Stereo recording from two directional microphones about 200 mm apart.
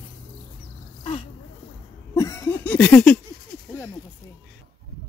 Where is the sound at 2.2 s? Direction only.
15° left (ahead or behind).